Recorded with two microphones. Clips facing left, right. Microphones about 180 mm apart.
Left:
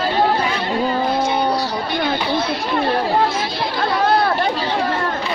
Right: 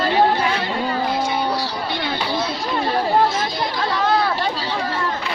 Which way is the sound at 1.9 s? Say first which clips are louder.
Left 4 dB; 55° left (ahead or behind).